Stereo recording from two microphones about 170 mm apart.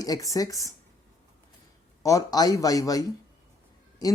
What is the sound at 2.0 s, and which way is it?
Speech, 20° left (ahead or behind).